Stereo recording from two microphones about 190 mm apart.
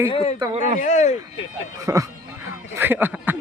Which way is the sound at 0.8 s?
40° left (ahead or behind).